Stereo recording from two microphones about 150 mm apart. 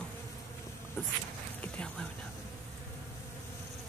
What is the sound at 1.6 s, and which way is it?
Speech, 5° left (ahead or behind).